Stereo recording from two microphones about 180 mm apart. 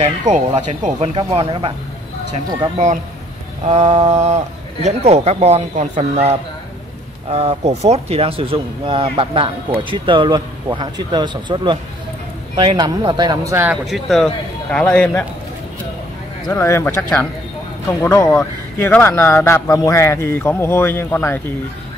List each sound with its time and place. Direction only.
0.0 s speech: 40° right (ahead or behind)
3.6 s speech: 40° right (ahead or behind); by 13.7 s 15° right (ahead or behind)
13.8 s a man's voice: centre (ahead or behind)
16.5 s speech: 15° left (ahead or behind)